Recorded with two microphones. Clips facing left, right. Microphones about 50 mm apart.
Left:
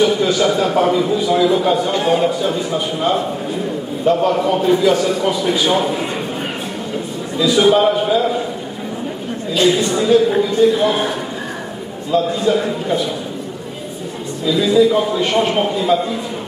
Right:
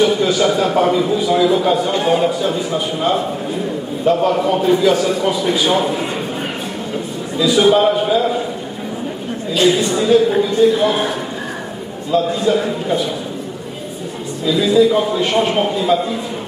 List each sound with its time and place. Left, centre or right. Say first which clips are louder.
0.0 s a man's voice: even; centre
7.3 s a man's voice: even; centre
9.9 s a man's voice: even; centre
14.4 s a man's voice: even; centre